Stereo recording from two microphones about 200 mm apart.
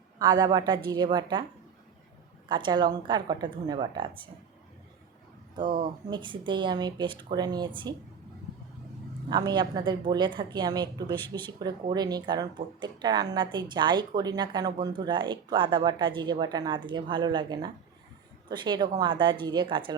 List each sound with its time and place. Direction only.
0.2 s speech: 20° right (ahead or behind)
2.5 s speech: 25° right (ahead or behind)
5.8 s speech: 25° right (ahead or behind)
9.3 s speech: 20° right (ahead or behind)